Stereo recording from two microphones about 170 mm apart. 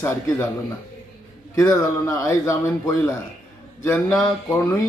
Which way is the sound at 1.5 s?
20° left (ahead or behind).